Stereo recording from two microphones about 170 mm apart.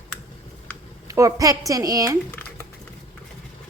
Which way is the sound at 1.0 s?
20° right (ahead or behind).